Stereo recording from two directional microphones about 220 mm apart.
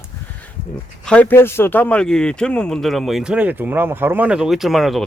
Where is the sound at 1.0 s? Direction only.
5° left (ahead or behind).